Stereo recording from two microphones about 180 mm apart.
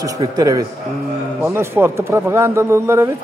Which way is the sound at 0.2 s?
20° right (ahead or behind).